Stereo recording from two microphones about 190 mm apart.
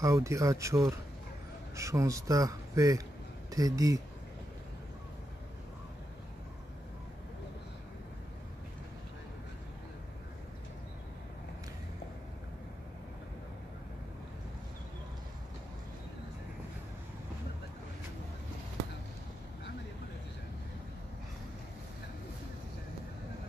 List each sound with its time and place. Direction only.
0.0 s speech: 15° right (ahead or behind)